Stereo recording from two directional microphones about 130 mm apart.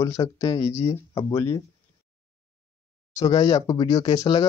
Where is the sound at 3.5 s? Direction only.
30° left (ahead or behind).